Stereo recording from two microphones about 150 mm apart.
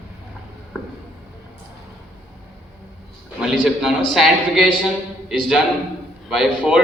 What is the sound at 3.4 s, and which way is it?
A man's voice, centre (ahead or behind).